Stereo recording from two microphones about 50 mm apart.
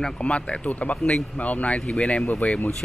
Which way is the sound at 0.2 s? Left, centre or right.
Left.